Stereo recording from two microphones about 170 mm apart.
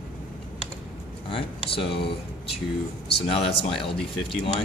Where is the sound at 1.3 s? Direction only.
30° left (ahead or behind).